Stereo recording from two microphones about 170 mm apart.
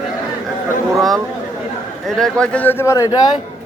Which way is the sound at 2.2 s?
5° left (ahead or behind).